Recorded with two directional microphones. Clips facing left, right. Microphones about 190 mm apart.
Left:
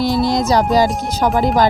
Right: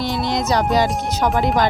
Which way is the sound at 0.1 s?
5° left (ahead or behind).